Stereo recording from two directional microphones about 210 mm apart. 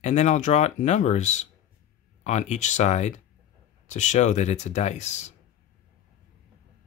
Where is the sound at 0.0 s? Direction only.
35° left (ahead or behind).